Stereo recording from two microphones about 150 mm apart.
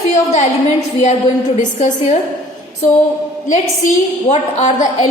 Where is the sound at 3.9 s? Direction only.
50° left (ahead or behind).